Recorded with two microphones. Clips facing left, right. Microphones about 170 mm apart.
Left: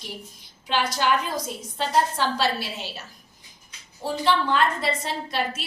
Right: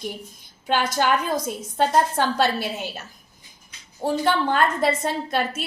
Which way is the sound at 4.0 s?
50° right (ahead or behind).